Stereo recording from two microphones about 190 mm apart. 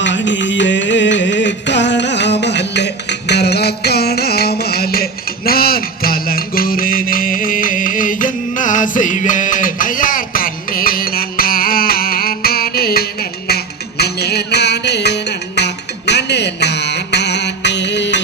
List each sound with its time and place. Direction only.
0.0 s music: 70° left (ahead or behind)